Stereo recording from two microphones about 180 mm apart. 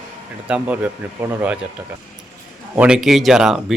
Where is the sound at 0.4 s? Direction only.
10° right (ahead or behind).